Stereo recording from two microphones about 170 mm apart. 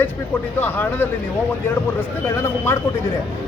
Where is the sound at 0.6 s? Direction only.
10° left (ahead or behind).